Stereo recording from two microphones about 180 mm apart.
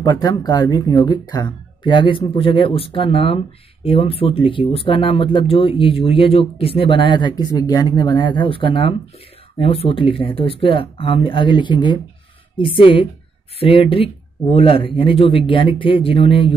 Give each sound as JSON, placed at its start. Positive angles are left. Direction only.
{"t": 0.0, "sound": "speech", "side_deg": 20}